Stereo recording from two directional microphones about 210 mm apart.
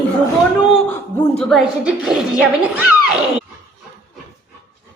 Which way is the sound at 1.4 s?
Centre (ahead or behind).